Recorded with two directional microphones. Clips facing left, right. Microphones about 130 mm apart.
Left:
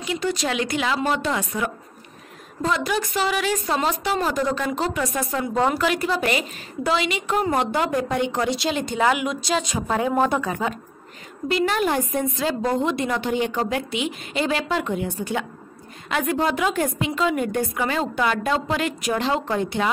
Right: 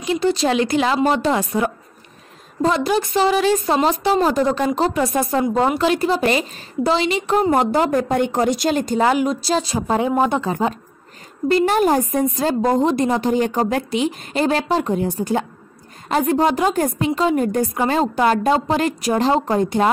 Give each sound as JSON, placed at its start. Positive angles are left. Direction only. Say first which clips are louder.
{"t": 0.0, "sound": "a woman's voice", "louder": "right 6 dB", "side_deg": -30}
{"t": 10.4, "sound": "a woman's voice", "louder": "right 5 dB", "side_deg": -30}